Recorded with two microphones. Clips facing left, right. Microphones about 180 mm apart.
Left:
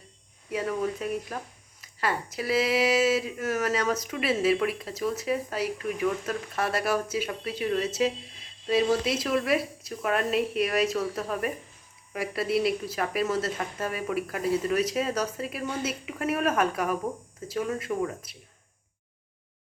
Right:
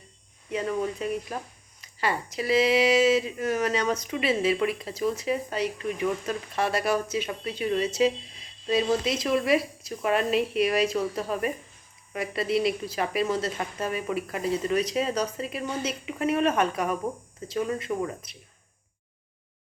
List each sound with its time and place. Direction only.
0.5 s speech: 5° left (ahead or behind)